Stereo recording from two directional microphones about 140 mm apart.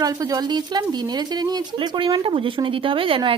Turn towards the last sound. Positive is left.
turn(degrees=-40)  # may be behind; listen again after turning